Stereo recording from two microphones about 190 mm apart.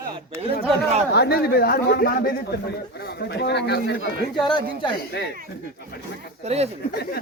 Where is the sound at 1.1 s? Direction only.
55° left (ahead or behind).